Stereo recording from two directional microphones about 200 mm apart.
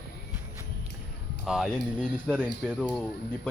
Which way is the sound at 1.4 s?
Centre (ahead or behind).